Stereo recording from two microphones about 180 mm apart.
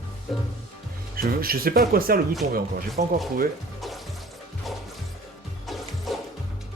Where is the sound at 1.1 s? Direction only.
55° right (ahead or behind).